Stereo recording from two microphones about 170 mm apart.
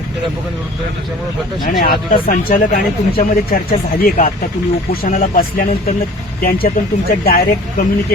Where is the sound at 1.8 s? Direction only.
55° left (ahead or behind).